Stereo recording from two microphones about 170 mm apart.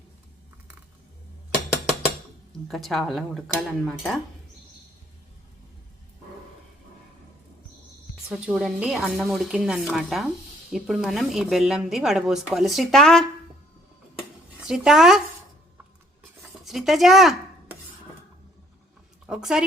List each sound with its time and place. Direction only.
2.6 s a woman's voice: centre (ahead or behind)
8.3 s a woman's voice: centre (ahead or behind)
14.7 s a woman's voice: 5° right (ahead or behind)
16.6 s dishes: centre (ahead or behind)
19.3 s a woman's voice: 5° right (ahead or behind)